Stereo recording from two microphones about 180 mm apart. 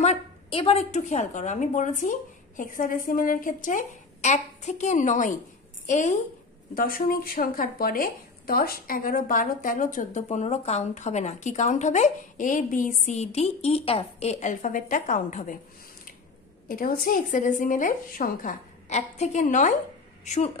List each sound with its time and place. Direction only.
0.0 s speech: 35° left (ahead or behind)
6.7 s speech: 50° left (ahead or behind)
16.6 s a woman's voice: 50° left (ahead or behind)